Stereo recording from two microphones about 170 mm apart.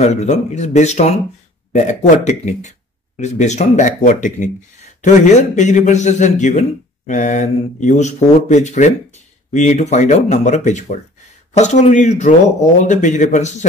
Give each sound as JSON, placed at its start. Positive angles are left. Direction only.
{"t": 0.0, "sound": "speech", "side_deg": 40}